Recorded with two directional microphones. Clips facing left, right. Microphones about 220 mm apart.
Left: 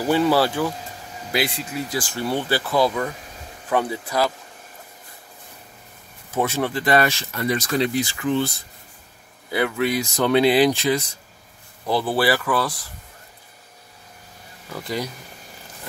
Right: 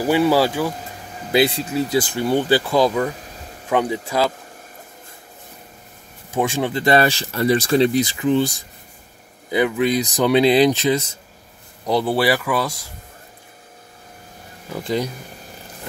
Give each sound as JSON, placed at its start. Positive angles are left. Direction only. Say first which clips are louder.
{"t": 0.0, "sound": "speech", "louder": "right 2 dB", "side_deg": -10}
{"t": 1.3, "sound": "speech", "louder": "right 7 dB", "side_deg": -25}
{"t": 6.3, "sound": "speech", "louder": "right 2 dB", "side_deg": -15}
{"t": 14.7, "sound": "speech", "louder": "right 5 dB", "side_deg": -20}